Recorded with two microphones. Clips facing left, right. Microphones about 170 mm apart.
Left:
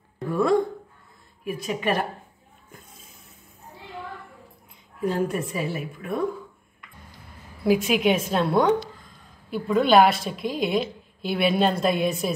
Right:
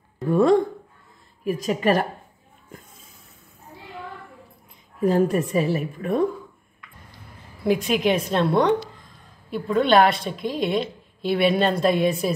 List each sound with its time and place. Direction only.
1.4 s a woman's voice: 40° right (ahead or behind)
5.0 s a woman's voice: 40° right (ahead or behind)
7.6 s a woman's voice: centre (ahead or behind)